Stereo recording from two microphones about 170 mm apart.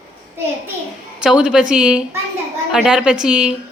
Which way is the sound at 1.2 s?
5° right (ahead or behind).